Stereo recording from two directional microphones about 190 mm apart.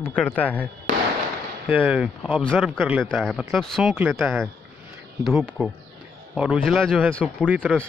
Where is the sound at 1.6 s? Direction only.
5° right (ahead or behind).